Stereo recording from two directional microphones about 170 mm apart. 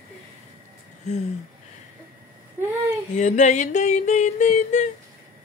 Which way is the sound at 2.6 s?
15° right (ahead or behind).